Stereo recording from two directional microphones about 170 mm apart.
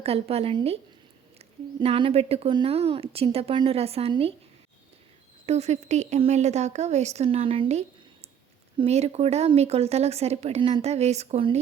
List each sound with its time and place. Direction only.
0.0 s speech: 35° right (ahead or behind)
5.5 s speech: 40° right (ahead or behind)